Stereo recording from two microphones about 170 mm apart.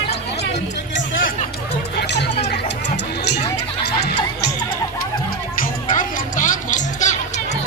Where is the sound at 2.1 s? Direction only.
90° left.